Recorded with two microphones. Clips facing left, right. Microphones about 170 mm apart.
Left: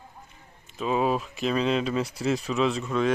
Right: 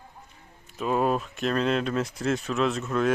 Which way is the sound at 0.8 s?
Centre (ahead or behind).